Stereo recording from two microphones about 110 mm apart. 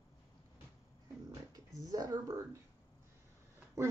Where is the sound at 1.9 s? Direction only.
35° right (ahead or behind).